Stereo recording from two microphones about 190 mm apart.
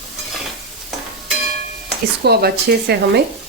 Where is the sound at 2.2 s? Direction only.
55° right (ahead or behind).